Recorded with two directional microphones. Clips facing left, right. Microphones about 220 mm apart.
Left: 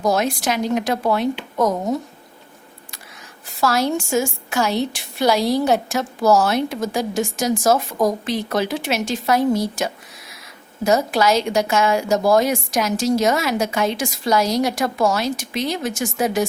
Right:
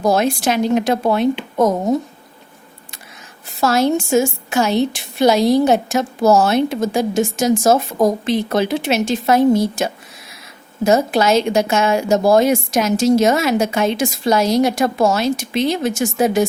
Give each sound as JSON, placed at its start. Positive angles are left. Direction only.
{"t": 0.0, "sound": "a woman's voice", "side_deg": -30}
{"t": 3.6, "sound": "a woman's voice", "side_deg": -25}